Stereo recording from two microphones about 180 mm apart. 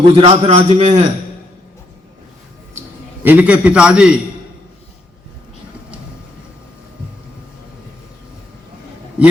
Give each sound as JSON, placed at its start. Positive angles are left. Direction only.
{"t": 0.1, "sound": "a man's voice", "side_deg": -35}
{"t": 3.2, "sound": "a man's voice", "side_deg": -10}